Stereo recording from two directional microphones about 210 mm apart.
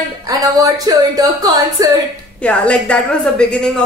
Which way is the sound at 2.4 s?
5° left (ahead or behind).